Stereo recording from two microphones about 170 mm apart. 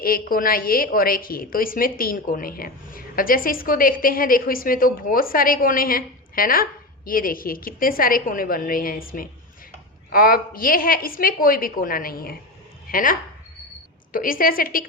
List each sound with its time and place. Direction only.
0.0 s a woman's voice: 60° left (ahead or behind)